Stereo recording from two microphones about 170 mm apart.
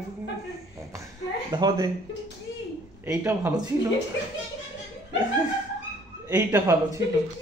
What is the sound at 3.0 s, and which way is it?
Speech, 15° right (ahead or behind).